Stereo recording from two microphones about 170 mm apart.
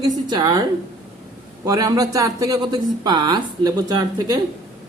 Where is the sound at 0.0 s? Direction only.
25° right (ahead or behind).